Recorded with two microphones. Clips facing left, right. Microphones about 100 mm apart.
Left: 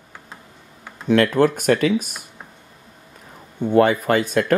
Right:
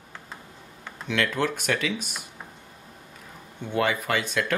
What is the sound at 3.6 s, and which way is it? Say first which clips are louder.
Speech: left 10 dB; 45° left (ahead or behind).